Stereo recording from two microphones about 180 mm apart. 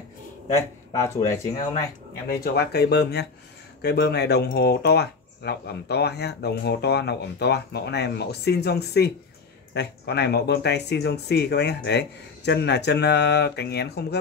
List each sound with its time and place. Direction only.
0.6 s speech: 15° left (ahead or behind)
2.2 s speech: 60° left (ahead or behind)